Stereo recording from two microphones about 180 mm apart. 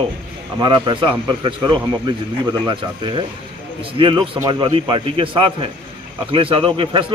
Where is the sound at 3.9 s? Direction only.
30° right (ahead or behind).